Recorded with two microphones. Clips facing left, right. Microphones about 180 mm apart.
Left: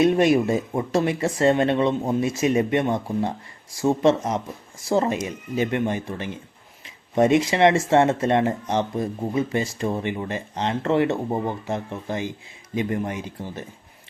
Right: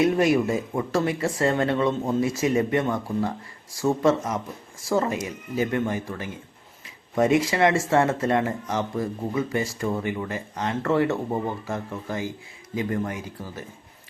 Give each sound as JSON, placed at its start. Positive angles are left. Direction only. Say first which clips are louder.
{"t": 0.0, "sound": "speech", "louder": "left 2 dB", "side_deg": 20}